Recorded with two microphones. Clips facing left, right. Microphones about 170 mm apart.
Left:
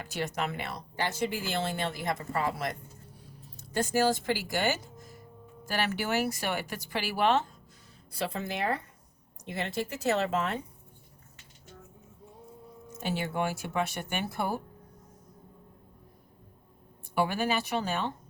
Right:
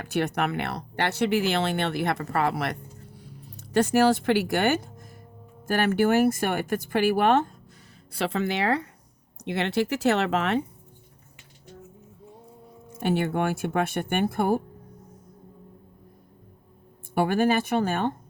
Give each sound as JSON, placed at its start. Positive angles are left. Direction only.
{"t": 0.0, "sound": "speech", "side_deg": -60}
{"t": 8.1, "sound": "speech", "side_deg": -75}
{"t": 13.0, "sound": "speech", "side_deg": -55}
{"t": 17.2, "sound": "speech", "side_deg": -50}